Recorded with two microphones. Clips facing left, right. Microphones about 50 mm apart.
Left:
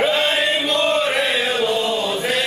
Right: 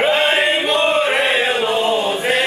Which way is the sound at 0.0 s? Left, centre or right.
Right.